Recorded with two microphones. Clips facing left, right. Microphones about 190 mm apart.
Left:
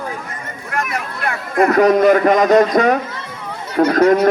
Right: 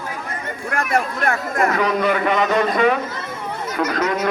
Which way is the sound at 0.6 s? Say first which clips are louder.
Right 3 dB; 50° right (ahead or behind).